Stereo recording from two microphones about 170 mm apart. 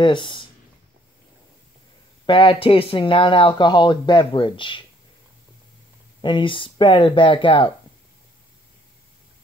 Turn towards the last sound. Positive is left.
turn(degrees=30)  # may be behind; listen again after turning